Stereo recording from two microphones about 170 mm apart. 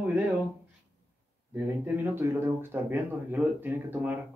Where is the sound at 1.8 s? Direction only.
10° right (ahead or behind).